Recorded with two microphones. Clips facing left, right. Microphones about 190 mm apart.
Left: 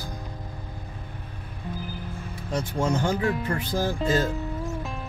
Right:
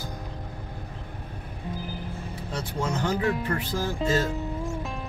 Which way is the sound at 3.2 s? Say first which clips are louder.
Even; centre (ahead or behind).